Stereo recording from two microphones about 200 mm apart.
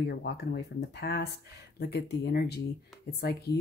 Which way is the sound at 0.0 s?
55° left (ahead or behind).